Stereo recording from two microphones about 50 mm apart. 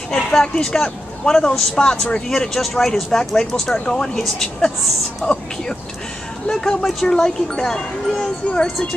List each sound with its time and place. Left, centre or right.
0.1 s speech: centre
5.2 s speech: centre